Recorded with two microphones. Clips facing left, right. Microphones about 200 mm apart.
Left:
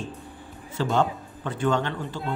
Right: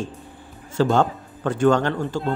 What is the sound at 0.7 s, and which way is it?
Speech, 45° right (ahead or behind).